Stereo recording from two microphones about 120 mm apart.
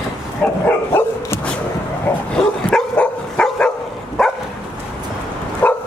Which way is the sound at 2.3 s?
5° left (ahead or behind).